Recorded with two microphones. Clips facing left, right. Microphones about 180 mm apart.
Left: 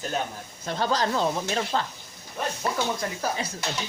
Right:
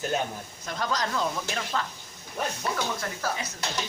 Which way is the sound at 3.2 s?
15° left (ahead or behind).